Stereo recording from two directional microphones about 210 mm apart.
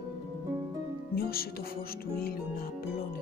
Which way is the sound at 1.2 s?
45° left (ahead or behind).